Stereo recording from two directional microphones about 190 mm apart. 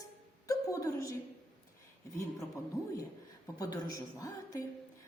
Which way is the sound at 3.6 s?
20° left (ahead or behind).